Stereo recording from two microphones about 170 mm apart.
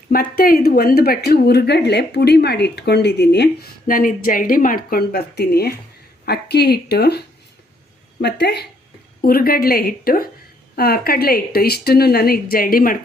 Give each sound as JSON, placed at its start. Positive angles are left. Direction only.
{"t": 0.1, "sound": "speech", "side_deg": 60}
{"t": 8.2, "sound": "speech", "side_deg": 80}
{"t": 9.2, "sound": "speech", "side_deg": 60}